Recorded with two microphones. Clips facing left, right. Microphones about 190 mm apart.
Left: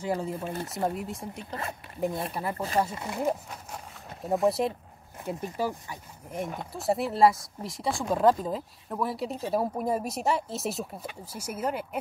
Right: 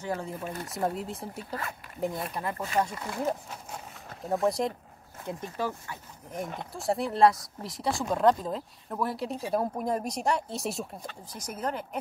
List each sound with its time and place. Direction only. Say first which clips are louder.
0.0 s speech: left 3 dB; 10° left (ahead or behind)
0.4 s speech: left 3 dB; 30° left (ahead or behind)
0.7 s speech: right 1 dB; centre (ahead or behind)
1.5 s speech: left 1 dB; 25° left (ahead or behind)
2.9 s speech: left 1 dB; 20° left (ahead or behind)
4.3 s speech: left 2 dB; centre (ahead or behind)